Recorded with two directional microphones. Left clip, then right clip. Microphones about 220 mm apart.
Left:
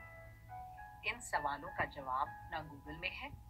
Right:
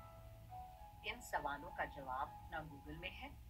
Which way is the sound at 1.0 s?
5° left (ahead or behind).